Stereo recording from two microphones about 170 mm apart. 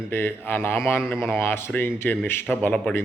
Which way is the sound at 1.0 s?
5° right (ahead or behind).